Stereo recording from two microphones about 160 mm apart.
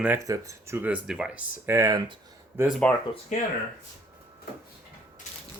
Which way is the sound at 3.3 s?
50° left (ahead or behind).